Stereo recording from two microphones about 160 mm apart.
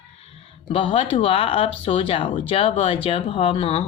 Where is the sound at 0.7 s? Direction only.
35° left (ahead or behind).